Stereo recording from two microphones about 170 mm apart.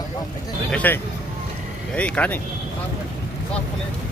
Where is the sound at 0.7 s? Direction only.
10° left (ahead or behind).